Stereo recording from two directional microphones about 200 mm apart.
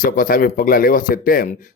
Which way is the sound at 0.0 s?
45° left (ahead or behind).